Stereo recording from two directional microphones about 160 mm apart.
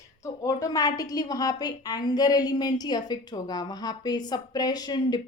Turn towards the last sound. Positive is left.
turn(degrees=25)  # may be behind; listen again after turning